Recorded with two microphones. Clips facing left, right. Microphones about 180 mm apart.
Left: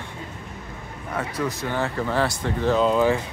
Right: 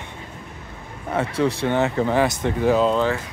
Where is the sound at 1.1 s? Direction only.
30° right (ahead or behind).